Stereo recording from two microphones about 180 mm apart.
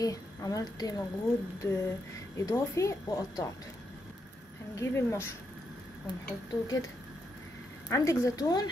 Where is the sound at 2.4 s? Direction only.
15° left (ahead or behind).